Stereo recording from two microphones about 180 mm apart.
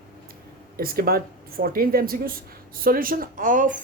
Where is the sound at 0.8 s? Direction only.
55° right (ahead or behind).